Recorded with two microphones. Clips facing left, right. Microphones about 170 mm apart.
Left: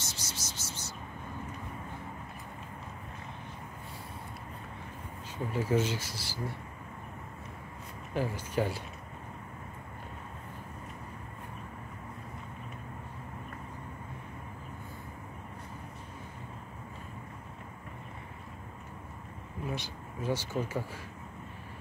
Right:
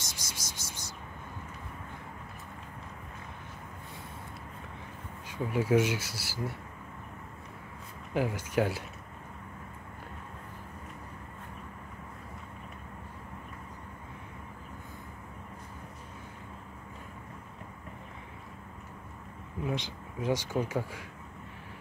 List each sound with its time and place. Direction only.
0.1 s a sound: 10° right (ahead or behind)
5.5 s speech: 10° right (ahead or behind)
8.1 s speech: 10° right (ahead or behind)
19.6 s speech: 20° right (ahead or behind)